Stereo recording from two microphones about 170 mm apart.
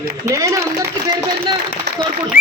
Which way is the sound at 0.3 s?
20° right (ahead or behind).